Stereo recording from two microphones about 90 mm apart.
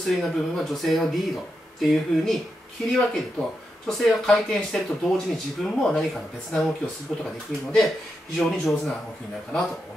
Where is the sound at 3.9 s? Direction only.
5° left (ahead or behind).